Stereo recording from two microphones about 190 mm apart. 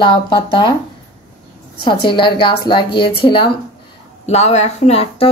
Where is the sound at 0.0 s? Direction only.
25° left (ahead or behind).